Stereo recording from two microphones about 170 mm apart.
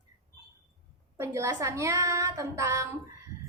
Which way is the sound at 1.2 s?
15° right (ahead or behind).